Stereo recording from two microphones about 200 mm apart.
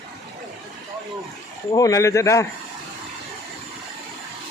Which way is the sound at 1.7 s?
15° left (ahead or behind).